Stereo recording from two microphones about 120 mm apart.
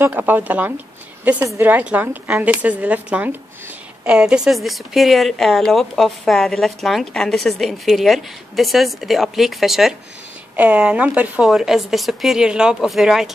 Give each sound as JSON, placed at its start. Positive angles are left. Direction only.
{"t": 0.0, "sound": "a woman's voice", "side_deg": -15}